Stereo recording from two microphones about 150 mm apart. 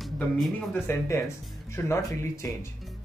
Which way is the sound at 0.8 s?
20° left (ahead or behind).